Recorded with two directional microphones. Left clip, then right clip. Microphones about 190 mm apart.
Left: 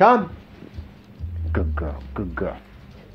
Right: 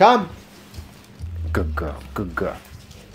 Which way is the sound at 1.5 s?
25° right (ahead or behind).